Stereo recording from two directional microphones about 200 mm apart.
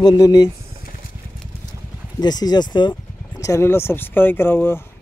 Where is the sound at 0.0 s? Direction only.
20° left (ahead or behind).